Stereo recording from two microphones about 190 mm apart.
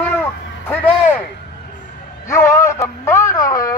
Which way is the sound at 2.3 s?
15° left (ahead or behind).